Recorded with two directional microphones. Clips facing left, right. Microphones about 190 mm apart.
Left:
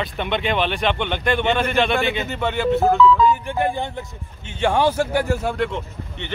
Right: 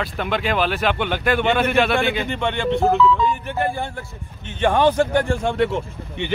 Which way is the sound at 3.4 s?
15° left (ahead or behind).